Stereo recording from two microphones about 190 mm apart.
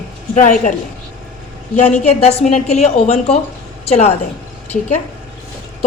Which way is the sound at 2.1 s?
35° left (ahead or behind).